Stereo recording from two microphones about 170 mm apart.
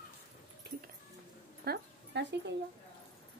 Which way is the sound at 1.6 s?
80° right.